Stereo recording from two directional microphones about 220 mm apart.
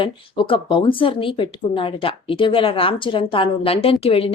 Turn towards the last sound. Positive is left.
turn(degrees=25)  # may be behind; listen again after turning